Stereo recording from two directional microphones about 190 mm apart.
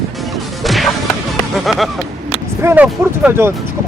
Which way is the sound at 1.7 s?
Centre (ahead or behind).